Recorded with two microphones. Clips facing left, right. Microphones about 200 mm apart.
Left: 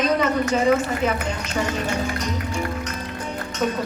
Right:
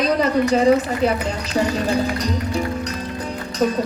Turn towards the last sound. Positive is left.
turn(degrees=-35)  # may be behind; listen again after turning